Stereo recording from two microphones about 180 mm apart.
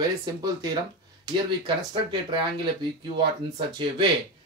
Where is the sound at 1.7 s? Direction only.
25° right (ahead or behind).